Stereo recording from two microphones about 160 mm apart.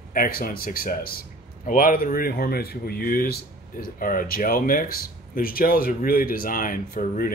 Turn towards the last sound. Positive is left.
turn(degrees=60)  # may be behind; listen again after turning